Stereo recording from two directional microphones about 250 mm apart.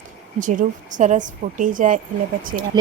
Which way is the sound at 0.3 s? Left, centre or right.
Right.